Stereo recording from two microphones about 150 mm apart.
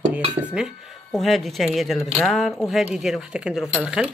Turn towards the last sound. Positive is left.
turn(degrees=-5)  # may be behind; listen again after turning